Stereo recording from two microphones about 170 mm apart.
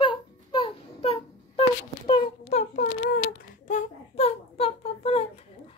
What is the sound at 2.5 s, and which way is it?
Child singing, 45° left (ahead or behind).